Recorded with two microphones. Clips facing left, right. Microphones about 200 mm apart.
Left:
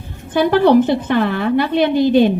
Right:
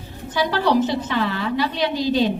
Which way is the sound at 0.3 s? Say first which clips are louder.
Left 8 dB; 55° left (ahead or behind).